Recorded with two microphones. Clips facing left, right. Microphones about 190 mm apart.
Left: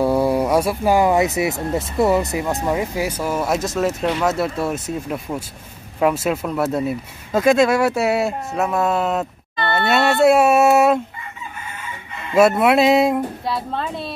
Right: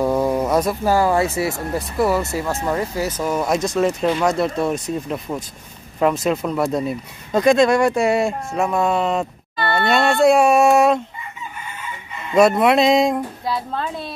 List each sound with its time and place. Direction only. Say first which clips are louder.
0.0 s speech: left 1 dB; 10° left (ahead or behind)
12.3 s speech: even; 5° left (ahead or behind)